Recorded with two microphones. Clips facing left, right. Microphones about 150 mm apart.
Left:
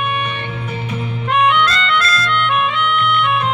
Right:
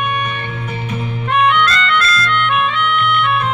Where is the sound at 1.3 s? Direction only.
15° left (ahead or behind).